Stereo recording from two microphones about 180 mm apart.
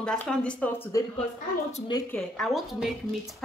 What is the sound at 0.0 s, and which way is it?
Speech, 5° left (ahead or behind).